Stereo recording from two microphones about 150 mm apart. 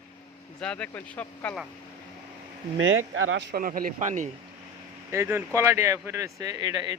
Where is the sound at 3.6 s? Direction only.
70° right (ahead or behind).